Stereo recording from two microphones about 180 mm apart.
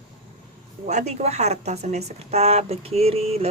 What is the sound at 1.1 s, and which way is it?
A woman's voice, 40° right (ahead or behind).